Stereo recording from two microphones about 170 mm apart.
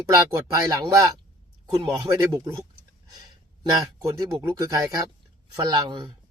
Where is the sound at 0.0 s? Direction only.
20° right (ahead or behind).